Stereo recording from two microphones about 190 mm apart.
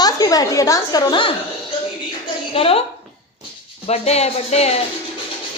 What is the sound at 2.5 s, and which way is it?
Speech, 30° left (ahead or behind).